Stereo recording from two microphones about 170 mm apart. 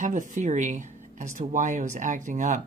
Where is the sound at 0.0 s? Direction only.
45° right (ahead or behind).